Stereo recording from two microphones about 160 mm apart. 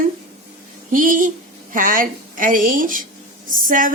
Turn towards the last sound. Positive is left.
turn(degrees=-55)  # may be behind; listen again after turning